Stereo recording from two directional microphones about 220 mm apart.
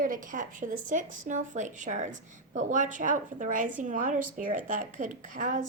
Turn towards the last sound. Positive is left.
turn(degrees=-35)  # may be behind; listen again after turning